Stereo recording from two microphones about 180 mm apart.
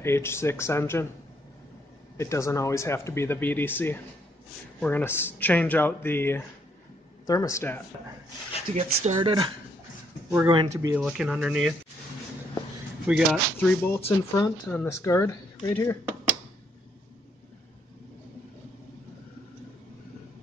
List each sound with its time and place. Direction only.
0.0 s speech: 15° left (ahead or behind)
2.1 s speech: 15° left (ahead or behind)
8.7 s speech: 35° right (ahead or behind)
10.5 s speech: 20° right (ahead or behind)
11.0 s speech: 5° right (ahead or behind)
13.0 s speech: 5° right (ahead or behind)
13.6 s speech: 10° left (ahead or behind)